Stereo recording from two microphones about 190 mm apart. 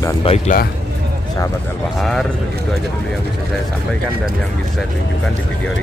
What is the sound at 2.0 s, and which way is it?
Speech, centre (ahead or behind).